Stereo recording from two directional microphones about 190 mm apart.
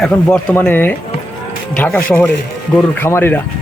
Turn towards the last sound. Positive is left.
turn(degrees=10)  # may be behind; listen again after turning